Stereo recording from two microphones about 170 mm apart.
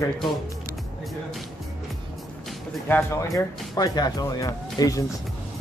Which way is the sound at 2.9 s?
15° left (ahead or behind).